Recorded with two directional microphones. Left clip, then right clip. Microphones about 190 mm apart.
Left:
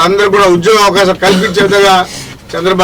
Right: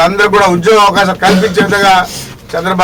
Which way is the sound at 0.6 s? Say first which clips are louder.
Even; centre (ahead or behind).